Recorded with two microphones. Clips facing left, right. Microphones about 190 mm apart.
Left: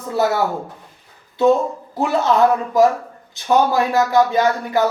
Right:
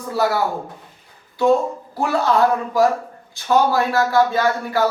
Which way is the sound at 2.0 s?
20° left (ahead or behind).